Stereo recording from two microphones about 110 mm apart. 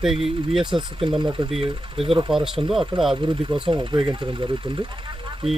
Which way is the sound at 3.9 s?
50° right (ahead or behind).